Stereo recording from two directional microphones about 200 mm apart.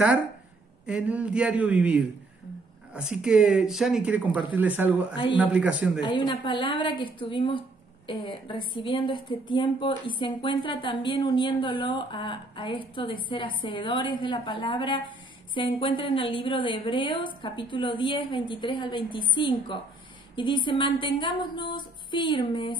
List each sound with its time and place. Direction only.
0.8 s speech: 5° right (ahead or behind)
5.9 s a woman's voice: 25° left (ahead or behind)